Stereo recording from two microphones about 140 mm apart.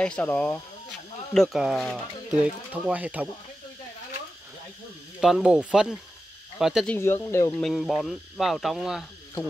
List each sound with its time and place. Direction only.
0.0 s speech: 10° left (ahead or behind)
1.3 s speech: centre (ahead or behind)
5.2 s speech: 5° right (ahead or behind)
6.9 s speech: 15° left (ahead or behind)
7.5 s speech: centre (ahead or behind)